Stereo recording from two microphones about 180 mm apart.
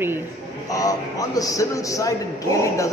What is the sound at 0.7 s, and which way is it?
A man's voice, 20° left (ahead or behind).